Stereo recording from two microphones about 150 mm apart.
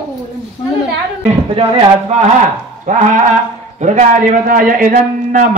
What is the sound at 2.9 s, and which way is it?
A man's voice, 55° right (ahead or behind).